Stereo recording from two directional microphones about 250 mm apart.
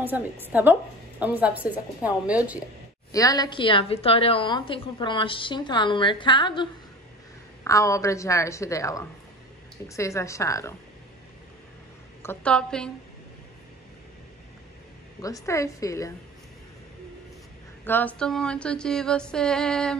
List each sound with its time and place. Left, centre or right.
0.0 s a woman's voice: centre
3.1 s a woman's voice: centre
12.2 s speech: centre
15.2 s a woman's voice: centre
17.8 s speech: centre